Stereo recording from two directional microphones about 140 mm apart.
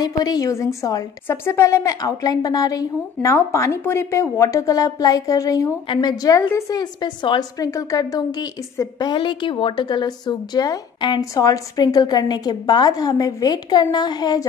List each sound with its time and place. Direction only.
0.0 s a woman's voice: 25° left (ahead or behind)